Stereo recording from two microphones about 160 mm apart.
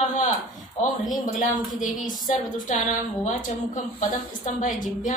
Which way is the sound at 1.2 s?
55° left (ahead or behind).